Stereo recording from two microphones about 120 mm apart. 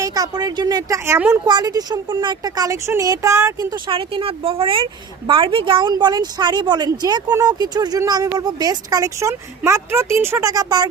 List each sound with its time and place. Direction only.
0.0 s a woman's voice: 30° right (ahead or behind)
1.5 s a woman's voice: 35° right (ahead or behind)
3.8 s a woman's voice: 45° right (ahead or behind); by 10.5 s 20° right (ahead or behind)
10.5 s a woman's voice: 35° right (ahead or behind)